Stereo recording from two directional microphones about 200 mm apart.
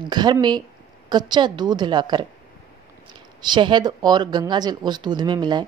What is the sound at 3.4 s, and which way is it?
A woman's voice, 20° right (ahead or behind).